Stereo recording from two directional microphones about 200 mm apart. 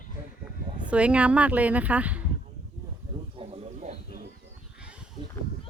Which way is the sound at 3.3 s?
30° right (ahead or behind).